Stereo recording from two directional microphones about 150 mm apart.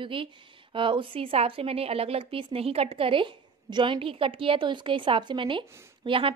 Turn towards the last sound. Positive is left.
turn(degrees=-35)  # may be behind; listen again after turning